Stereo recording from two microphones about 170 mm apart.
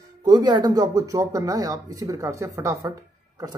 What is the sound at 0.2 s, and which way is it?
Speech, 25° right (ahead or behind).